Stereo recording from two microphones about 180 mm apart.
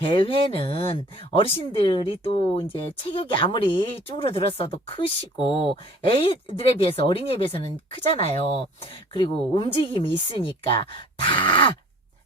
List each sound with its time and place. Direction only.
0.1 s speech: 30° left (ahead or behind)